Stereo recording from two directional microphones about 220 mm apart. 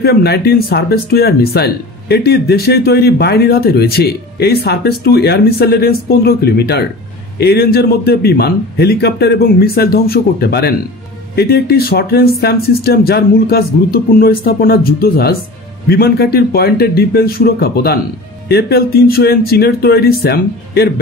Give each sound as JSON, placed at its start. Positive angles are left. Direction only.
{"t": 0.0, "sound": "speech", "side_deg": 45}